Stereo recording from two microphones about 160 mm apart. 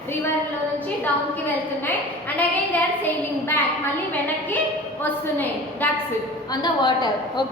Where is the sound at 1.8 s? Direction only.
10° left (ahead or behind).